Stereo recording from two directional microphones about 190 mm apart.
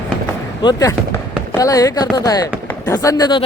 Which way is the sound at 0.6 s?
20° left (ahead or behind).